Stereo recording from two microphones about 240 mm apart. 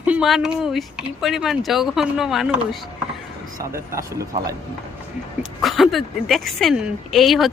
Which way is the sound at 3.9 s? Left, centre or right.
Centre.